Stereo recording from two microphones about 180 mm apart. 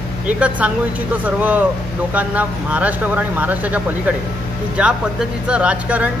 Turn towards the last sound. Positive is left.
turn(degrees=-5)  # may be behind; listen again after turning